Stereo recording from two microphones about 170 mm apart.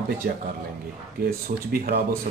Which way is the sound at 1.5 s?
55° right (ahead or behind).